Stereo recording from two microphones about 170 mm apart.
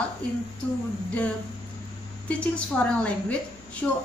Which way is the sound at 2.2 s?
5° left (ahead or behind).